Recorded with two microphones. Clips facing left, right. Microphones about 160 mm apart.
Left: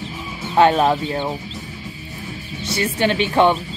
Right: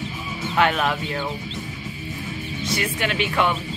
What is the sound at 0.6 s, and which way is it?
Speech, 30° left (ahead or behind).